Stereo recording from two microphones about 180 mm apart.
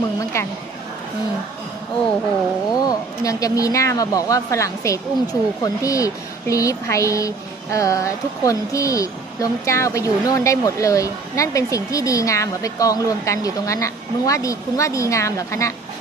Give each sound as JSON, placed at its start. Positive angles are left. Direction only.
{"t": 0.2, "sound": "speech", "side_deg": 15}
{"t": 2.7, "sound": "speech", "side_deg": 20}